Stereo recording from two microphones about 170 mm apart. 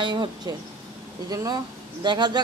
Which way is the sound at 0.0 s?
25° right (ahead or behind).